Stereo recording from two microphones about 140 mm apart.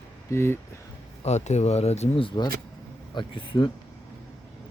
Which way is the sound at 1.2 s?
55° left (ahead or behind).